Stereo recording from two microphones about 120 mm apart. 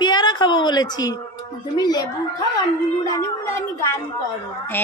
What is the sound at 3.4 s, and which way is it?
Speech, 25° left (ahead or behind).